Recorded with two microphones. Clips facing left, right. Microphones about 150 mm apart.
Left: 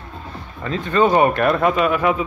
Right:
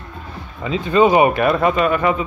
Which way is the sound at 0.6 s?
10° right (ahead or behind).